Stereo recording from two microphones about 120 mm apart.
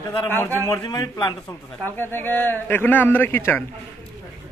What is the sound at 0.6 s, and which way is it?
Speech, 30° left (ahead or behind).